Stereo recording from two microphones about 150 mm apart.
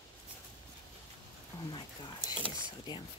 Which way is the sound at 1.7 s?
30° left (ahead or behind).